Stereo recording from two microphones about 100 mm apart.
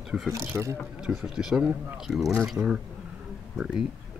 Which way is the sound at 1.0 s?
Centre (ahead or behind).